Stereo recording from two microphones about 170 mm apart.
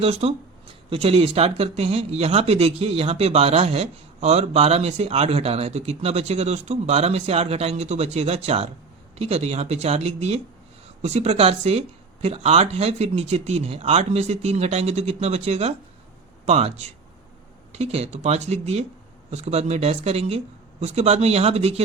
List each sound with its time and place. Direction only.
0.0 s speech: 35° right (ahead or behind)